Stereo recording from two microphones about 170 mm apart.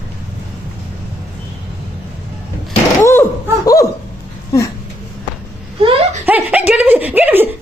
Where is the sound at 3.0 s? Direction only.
15° left (ahead or behind).